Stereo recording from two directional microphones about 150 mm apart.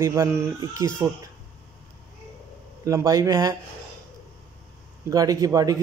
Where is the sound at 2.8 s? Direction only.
20° right (ahead or behind).